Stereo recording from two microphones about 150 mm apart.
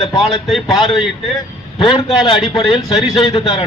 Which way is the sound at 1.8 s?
35° left (ahead or behind).